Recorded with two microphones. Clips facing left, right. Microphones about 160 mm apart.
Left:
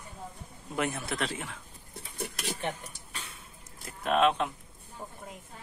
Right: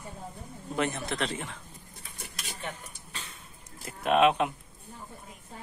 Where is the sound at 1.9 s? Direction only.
60° left (ahead or behind).